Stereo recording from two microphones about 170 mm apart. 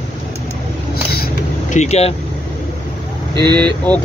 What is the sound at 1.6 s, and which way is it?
Speech, 40° left (ahead or behind).